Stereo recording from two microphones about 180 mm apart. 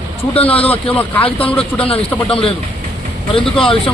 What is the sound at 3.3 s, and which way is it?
Speech, 30° left (ahead or behind).